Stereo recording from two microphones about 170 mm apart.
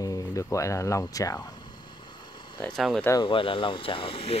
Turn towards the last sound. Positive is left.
turn(degrees=35)  # may be behind; listen again after turning